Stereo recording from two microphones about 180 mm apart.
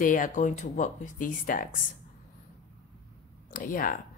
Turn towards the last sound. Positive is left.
turn(degrees=50)  # may be behind; listen again after turning